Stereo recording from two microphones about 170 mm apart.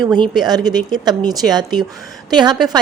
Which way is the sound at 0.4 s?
25° right (ahead or behind).